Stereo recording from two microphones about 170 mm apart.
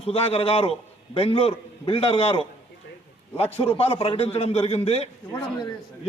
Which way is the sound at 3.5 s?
35° left (ahead or behind).